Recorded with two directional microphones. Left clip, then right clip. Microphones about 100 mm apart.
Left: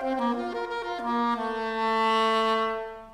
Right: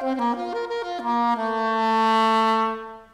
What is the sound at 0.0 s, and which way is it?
Saxophone, 30° left (ahead or behind).